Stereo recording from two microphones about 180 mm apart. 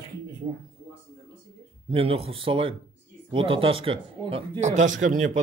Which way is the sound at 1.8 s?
30° right (ahead or behind).